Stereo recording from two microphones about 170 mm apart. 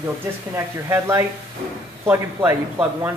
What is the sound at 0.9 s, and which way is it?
Speech, 15° right (ahead or behind).